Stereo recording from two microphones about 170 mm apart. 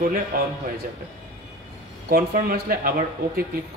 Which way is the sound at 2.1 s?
60° right (ahead or behind).